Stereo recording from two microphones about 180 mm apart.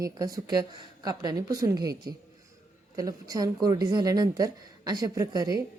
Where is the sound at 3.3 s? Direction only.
20° right (ahead or behind).